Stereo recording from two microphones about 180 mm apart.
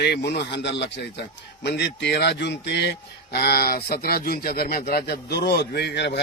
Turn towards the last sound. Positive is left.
turn(degrees=70)  # may be behind; listen again after turning